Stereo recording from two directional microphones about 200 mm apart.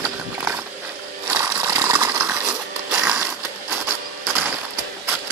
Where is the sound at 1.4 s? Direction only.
15° right (ahead or behind).